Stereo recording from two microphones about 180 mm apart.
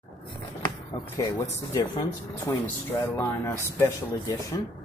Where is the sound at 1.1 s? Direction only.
20° left (ahead or behind).